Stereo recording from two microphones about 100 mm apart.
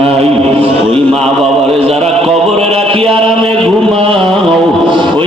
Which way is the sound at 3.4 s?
10° left (ahead or behind).